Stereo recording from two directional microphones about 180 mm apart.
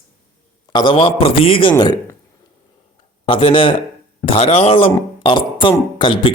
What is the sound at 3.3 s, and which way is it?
Speech, 30° left (ahead or behind).